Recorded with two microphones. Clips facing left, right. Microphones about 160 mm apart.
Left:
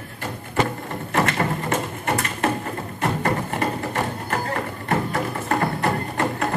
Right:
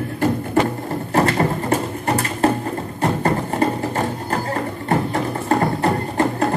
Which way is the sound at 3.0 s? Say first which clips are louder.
Right 3 dB; 30° right (ahead or behind).